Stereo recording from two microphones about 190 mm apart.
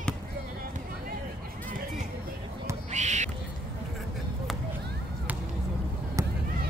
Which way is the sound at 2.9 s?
40° right (ahead or behind).